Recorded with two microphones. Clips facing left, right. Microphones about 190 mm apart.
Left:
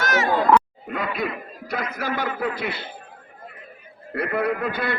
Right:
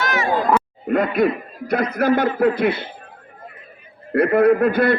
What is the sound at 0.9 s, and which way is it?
Laughter, 50° right (ahead or behind).